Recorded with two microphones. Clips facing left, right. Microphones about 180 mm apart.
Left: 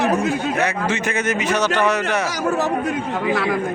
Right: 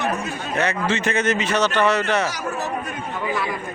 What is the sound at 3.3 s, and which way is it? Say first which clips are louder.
Speech: left 5 dB; 90° left.